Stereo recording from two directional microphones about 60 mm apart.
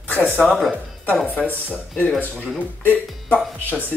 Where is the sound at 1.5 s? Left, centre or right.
Left.